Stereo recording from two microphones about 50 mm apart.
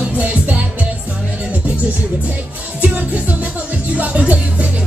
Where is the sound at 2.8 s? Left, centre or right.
Right.